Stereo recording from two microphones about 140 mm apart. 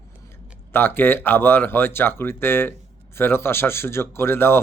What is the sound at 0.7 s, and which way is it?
Speech, 15° left (ahead or behind).